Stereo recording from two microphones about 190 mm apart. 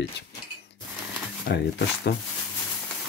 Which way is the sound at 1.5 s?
60° left (ahead or behind).